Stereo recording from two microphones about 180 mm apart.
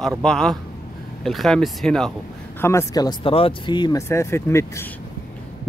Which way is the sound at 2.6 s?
15° left (ahead or behind).